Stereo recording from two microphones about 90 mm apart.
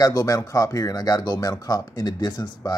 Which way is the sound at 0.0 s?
45° left (ahead or behind).